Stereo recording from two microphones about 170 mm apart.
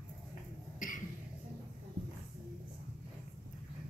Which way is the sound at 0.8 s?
50° left (ahead or behind).